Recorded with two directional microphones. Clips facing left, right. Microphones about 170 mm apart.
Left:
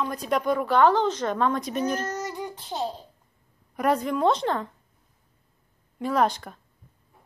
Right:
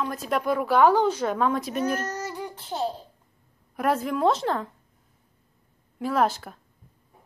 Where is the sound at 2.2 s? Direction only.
15° left (ahead or behind).